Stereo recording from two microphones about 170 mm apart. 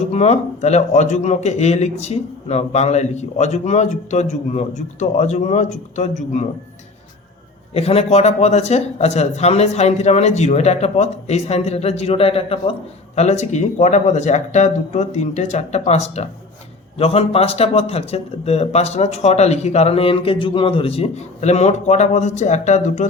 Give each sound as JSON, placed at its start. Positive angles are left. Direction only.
{"t": 0.1, "sound": "a man's voice", "side_deg": 40}
{"t": 7.7, "sound": "a man's voice", "side_deg": 35}